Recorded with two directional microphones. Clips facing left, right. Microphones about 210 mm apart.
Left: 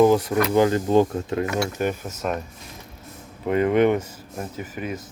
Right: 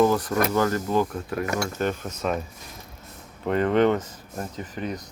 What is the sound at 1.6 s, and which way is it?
Speech, 10° left (ahead or behind).